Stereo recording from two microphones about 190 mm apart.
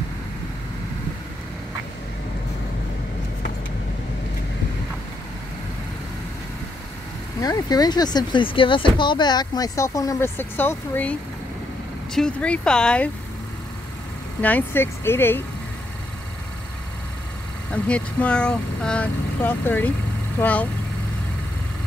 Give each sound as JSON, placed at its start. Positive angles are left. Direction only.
{"t": 7.3, "sound": "speech", "side_deg": 20}
{"t": 14.4, "sound": "speech", "side_deg": 10}
{"t": 17.8, "sound": "speech", "side_deg": 5}